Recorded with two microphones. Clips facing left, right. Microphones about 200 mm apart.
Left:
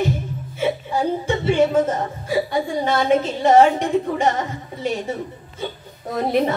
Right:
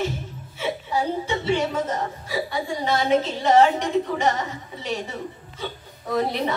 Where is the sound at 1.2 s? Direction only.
50° left (ahead or behind).